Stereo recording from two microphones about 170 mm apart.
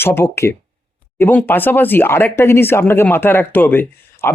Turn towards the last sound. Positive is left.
turn(degrees=10)  # may be behind; listen again after turning